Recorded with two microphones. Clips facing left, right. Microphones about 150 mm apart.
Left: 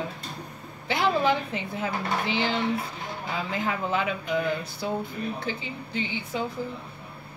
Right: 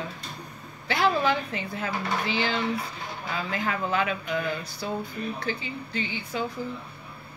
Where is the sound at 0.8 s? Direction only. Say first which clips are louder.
Even; 20° left (ahead or behind).